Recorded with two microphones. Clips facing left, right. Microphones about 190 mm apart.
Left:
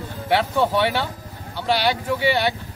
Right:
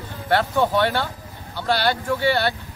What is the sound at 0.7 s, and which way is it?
Speech, 10° left (ahead or behind).